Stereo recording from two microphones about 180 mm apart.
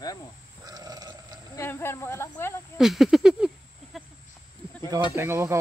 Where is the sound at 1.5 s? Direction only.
15° left (ahead or behind).